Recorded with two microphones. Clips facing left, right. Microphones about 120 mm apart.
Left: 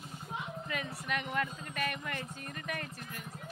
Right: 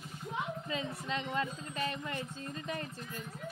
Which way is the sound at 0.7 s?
25° right (ahead or behind).